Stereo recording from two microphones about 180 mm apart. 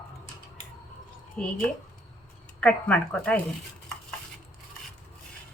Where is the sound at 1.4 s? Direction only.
5° left (ahead or behind).